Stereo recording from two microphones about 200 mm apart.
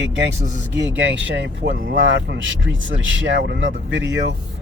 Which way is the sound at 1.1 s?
65° right (ahead or behind).